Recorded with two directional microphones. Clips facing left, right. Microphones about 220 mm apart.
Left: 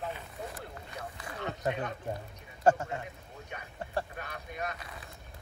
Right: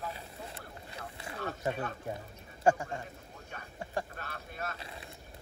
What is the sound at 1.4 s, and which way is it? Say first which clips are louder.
Speech: left 1 dB; 20° left (ahead or behind).